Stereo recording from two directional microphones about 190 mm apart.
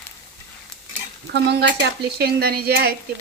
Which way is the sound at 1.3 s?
65° right (ahead or behind).